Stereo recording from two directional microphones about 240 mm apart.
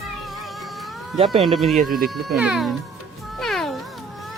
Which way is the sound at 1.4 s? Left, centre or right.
Centre.